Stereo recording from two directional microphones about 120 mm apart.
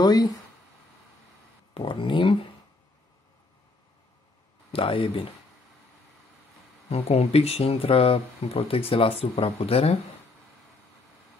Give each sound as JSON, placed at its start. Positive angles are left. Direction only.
{"t": 0.0, "sound": "speech", "side_deg": 35}
{"t": 1.7, "sound": "speech", "side_deg": 45}
{"t": 4.7, "sound": "speech", "side_deg": 50}
{"t": 6.9, "sound": "speech", "side_deg": 60}